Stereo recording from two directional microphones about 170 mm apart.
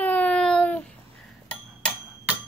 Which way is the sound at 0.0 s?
10° left (ahead or behind).